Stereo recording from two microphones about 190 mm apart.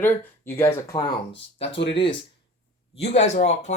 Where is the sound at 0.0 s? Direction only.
10° left (ahead or behind).